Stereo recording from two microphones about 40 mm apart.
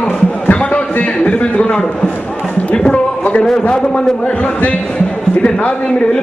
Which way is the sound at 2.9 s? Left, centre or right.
Left.